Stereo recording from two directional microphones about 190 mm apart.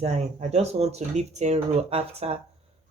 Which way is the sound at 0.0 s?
35° right (ahead or behind).